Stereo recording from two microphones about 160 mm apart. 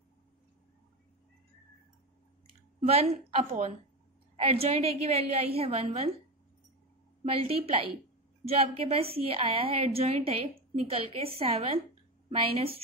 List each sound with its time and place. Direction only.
2.8 s a woman's voice: 40° right (ahead or behind)
7.2 s a woman's voice: 35° right (ahead or behind)